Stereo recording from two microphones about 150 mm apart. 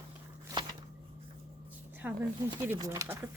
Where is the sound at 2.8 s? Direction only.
20° right (ahead or behind).